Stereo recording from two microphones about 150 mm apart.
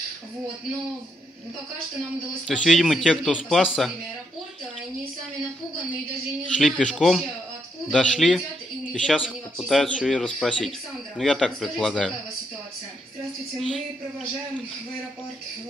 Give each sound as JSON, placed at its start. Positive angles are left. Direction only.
{"t": 2.4, "sound": "speech", "side_deg": 0}
{"t": 6.5, "sound": "speech", "side_deg": 5}
{"t": 13.6, "sound": "speech", "side_deg": 0}